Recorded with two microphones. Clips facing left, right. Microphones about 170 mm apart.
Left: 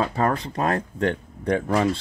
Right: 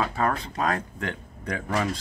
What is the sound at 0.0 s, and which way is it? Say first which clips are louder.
Speech: left 3 dB; 35° left (ahead or behind).